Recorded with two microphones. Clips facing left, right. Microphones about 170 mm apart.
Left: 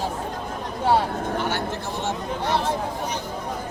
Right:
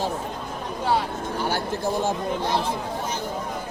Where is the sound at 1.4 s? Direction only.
35° right (ahead or behind).